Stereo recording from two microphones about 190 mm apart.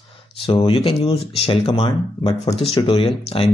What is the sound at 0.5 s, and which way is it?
Speech, 30° left (ahead or behind).